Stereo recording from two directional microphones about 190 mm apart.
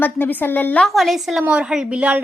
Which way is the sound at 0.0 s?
10° left (ahead or behind).